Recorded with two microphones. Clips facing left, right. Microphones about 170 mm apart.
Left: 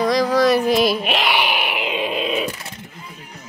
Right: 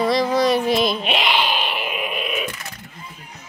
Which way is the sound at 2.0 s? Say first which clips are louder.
Left 4 dB; 30° left (ahead or behind).